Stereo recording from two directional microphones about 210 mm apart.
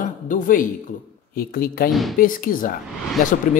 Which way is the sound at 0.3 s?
40° left (ahead or behind).